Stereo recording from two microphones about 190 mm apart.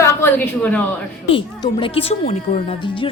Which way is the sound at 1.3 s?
25° left (ahead or behind).